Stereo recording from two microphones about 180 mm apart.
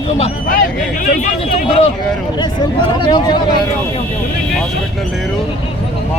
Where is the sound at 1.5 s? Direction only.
35° left (ahead or behind).